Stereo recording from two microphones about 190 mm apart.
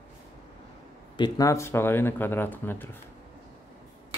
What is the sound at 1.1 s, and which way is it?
Speech, 20° left (ahead or behind).